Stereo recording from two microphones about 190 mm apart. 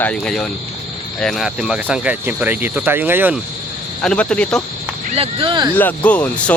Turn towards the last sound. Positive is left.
turn(degrees=5)  # may be behind; listen again after turning